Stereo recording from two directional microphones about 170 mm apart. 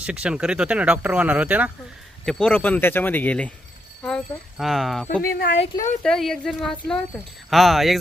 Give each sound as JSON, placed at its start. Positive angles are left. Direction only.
{"t": 0.0, "sound": "speech", "side_deg": -5}
{"t": 2.2, "sound": "speech", "side_deg": 5}
{"t": 5.2, "sound": "a woman's voice", "side_deg": 60}
{"t": 6.0, "sound": "speech", "side_deg": 5}